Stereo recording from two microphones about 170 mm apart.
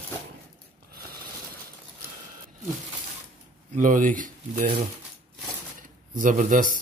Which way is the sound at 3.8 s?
50° right (ahead or behind).